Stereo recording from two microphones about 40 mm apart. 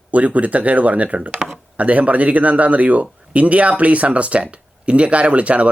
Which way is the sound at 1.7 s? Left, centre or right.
Right.